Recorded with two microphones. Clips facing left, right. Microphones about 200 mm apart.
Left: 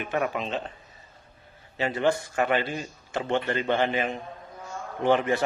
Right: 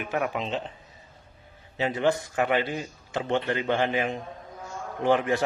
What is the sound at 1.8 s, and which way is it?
A man's voice, 15° right (ahead or behind).